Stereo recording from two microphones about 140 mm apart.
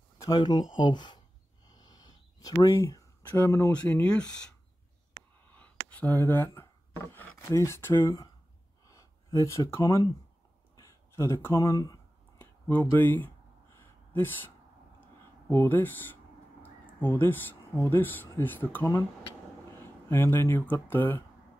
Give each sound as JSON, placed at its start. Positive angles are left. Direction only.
{"t": 0.2, "sound": "speech", "side_deg": 30}
{"t": 2.4, "sound": "speech", "side_deg": 25}
{"t": 3.7, "sound": "speech", "side_deg": 10}
{"t": 5.5, "sound": "a sound", "side_deg": 10}
{"t": 7.2, "sound": "speech", "side_deg": 15}
{"t": 8.8, "sound": "a sound", "side_deg": 25}
{"t": 10.8, "sound": "speech", "side_deg": 20}
{"t": 12.4, "sound": "speech", "side_deg": 15}
{"t": 13.7, "sound": "a sound", "side_deg": 15}
{"t": 15.5, "sound": "speech", "side_deg": 15}